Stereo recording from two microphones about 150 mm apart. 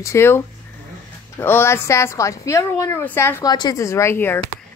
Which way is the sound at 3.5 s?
25° left (ahead or behind).